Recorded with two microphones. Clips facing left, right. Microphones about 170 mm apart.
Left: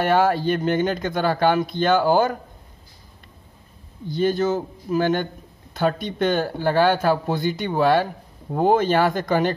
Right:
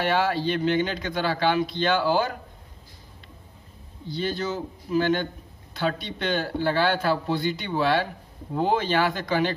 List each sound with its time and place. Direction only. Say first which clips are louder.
0.0 s speech: left 5 dB; 50° left (ahead or behind)
4.1 s speech: left 8 dB; 50° left (ahead or behind)